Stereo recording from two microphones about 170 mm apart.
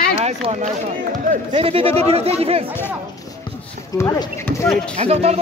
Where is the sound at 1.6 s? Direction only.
35° right (ahead or behind).